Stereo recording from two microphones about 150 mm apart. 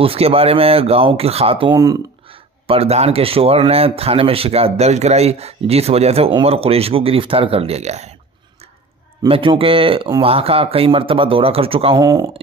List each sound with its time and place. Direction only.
0.0 s speech: 40° right (ahead or behind)
9.3 s speech: 35° right (ahead or behind)
12.0 s speech: 25° right (ahead or behind)